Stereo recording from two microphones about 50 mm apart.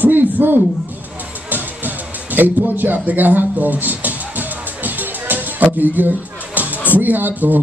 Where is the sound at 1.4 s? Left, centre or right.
Right.